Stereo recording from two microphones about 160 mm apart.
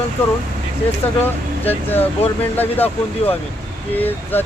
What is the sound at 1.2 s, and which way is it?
Speech, 10° left (ahead or behind).